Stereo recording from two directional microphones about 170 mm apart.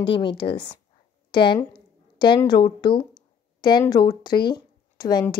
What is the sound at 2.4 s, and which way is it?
Speech, 25° left (ahead or behind).